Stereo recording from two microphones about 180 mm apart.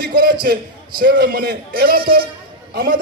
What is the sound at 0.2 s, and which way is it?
A man's voice, 55° right (ahead or behind).